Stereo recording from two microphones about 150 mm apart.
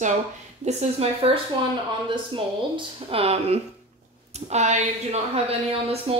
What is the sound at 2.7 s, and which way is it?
Speech, 40° right (ahead or behind).